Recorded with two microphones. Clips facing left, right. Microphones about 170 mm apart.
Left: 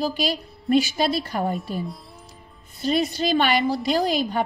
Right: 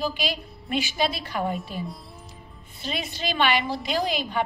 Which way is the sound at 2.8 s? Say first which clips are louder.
Left 9 dB; 40° left (ahead or behind).